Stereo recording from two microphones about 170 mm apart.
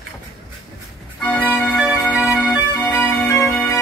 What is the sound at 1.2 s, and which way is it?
Organ, 5° left (ahead or behind).